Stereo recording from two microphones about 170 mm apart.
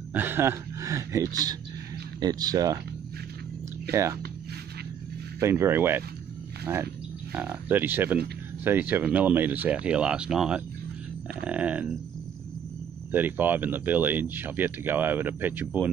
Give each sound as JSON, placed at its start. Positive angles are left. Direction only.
{"t": 0.1, "sound": "speech", "side_deg": -10}
{"t": 3.9, "sound": "speech", "side_deg": -15}
{"t": 5.4, "sound": "speech", "side_deg": -15}
{"t": 13.1, "sound": "speech", "side_deg": -10}